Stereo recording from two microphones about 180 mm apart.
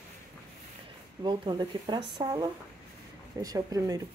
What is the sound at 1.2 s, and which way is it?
Speech, 25° right (ahead or behind).